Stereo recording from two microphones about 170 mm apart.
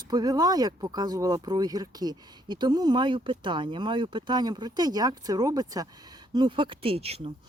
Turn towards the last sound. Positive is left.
turn(degrees=-35)  # may be behind; listen again after turning